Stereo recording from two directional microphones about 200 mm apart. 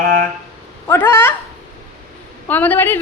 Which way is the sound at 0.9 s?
10° left (ahead or behind).